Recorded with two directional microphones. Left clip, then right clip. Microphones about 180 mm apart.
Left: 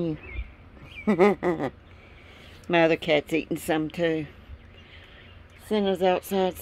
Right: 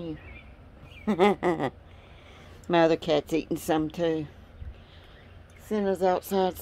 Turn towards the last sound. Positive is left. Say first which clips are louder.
# even
turn(degrees=0)  # may be behind; listen again after turning